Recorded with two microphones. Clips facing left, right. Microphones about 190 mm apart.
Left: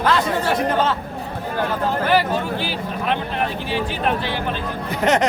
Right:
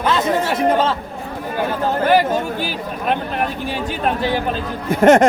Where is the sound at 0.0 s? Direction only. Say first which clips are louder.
Right 2 dB; 20° right (ahead or behind).